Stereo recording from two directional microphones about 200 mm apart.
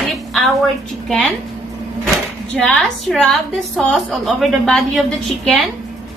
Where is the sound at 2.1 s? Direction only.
Centre (ahead or behind).